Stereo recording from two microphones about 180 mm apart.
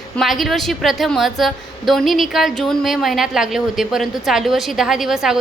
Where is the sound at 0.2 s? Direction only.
Centre (ahead or behind).